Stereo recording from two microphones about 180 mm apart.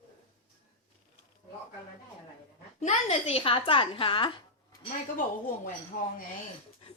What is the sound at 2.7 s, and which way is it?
Speech, 35° left (ahead or behind).